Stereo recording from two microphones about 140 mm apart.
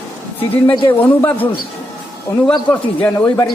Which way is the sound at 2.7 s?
10° left (ahead or behind).